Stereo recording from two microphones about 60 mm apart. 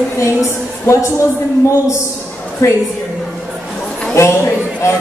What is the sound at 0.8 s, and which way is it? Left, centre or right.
Speech, left.